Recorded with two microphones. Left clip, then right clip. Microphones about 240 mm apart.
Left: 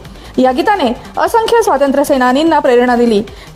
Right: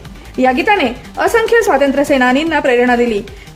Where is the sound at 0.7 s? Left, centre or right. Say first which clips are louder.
Left 1 dB; left.